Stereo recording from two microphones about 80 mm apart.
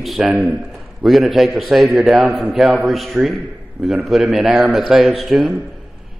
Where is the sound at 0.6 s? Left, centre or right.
Centre.